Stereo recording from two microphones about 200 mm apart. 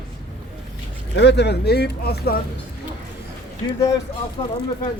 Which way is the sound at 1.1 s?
60° left (ahead or behind).